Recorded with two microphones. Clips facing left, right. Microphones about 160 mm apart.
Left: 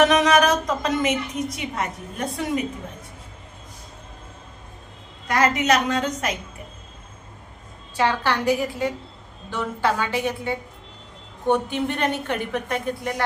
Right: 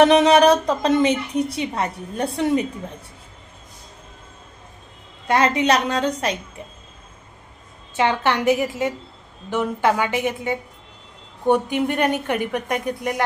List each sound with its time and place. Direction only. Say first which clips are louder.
0.0 s a woman's voice: right 4 dB; 30° right (ahead or behind)
5.3 s a woman's voice: right 2 dB; 30° right (ahead or behind)
7.9 s a woman's voice: right 2 dB; 20° right (ahead or behind)